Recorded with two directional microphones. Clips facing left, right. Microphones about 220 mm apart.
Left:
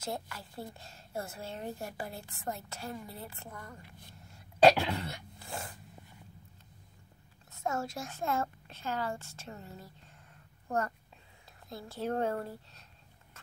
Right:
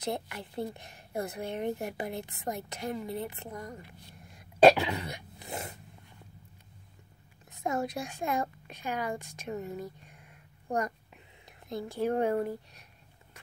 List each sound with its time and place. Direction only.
0.0 s a woman's voice: 20° right (ahead or behind)
5.0 s a woman's voice: 15° right (ahead or behind)
7.5 s a woman's voice: 15° right (ahead or behind)